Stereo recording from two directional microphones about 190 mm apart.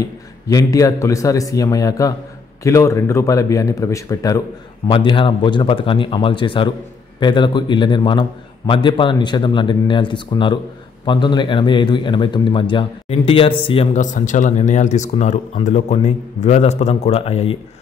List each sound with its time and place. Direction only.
0.0 s a man's voice: 20° left (ahead or behind)
13.9 s speech: 40° left (ahead or behind)